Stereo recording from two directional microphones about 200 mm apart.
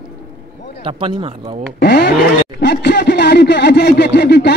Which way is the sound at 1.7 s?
55° left (ahead or behind).